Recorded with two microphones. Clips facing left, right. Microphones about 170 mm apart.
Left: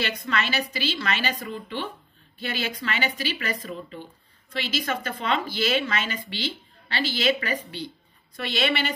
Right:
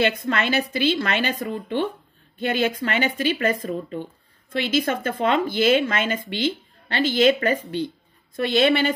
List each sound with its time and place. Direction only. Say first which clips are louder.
0.0 s a woman's voice: right 6 dB; 55° right (ahead or behind)